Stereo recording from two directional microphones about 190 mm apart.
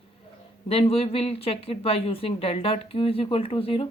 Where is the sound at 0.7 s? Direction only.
30° left (ahead or behind).